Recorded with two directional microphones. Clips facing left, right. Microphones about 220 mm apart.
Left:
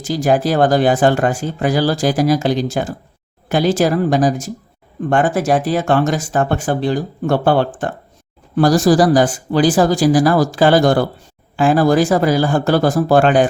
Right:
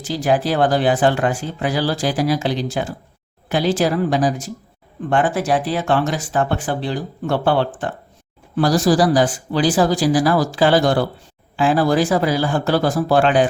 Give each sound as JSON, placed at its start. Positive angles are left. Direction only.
{"t": 0.0, "sound": "speech", "side_deg": 45}